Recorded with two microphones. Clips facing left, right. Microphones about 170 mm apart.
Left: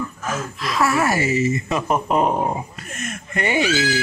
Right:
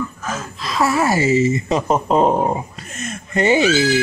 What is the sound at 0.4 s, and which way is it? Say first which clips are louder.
Speech: right 1 dB; 30° right (ahead or behind).